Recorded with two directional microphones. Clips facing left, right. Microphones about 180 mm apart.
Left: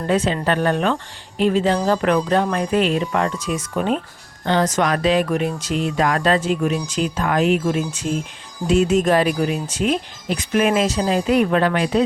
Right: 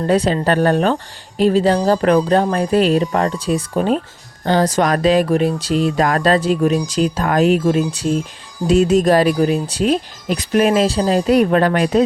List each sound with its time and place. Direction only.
0.1 s speech: 40° right (ahead or behind)